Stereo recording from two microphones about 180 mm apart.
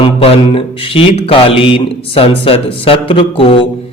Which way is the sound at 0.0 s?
30° left (ahead or behind).